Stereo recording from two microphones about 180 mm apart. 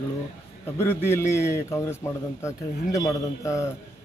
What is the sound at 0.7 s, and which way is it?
A man's voice, 15° left (ahead or behind).